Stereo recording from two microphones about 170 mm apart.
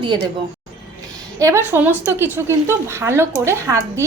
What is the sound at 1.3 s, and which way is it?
A woman's voice, 15° right (ahead or behind).